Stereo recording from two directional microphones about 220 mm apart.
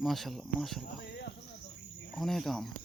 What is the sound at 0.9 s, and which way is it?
Speech, 50° left (ahead or behind).